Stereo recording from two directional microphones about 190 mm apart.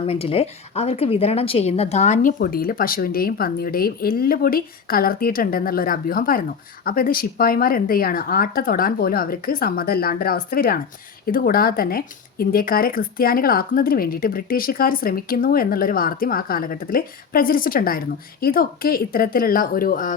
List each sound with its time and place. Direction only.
0.0 s speech: 30° left (ahead or behind)
2.4 s speech: 50° left (ahead or behind)